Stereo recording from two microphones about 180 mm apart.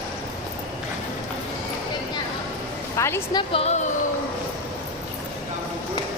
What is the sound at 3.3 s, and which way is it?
Speech, 30° left (ahead or behind).